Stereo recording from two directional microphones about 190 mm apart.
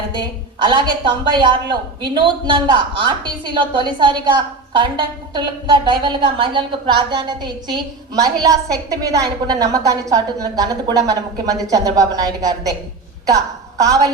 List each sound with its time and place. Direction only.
0.1 s a woman's voice: 25° right (ahead or behind)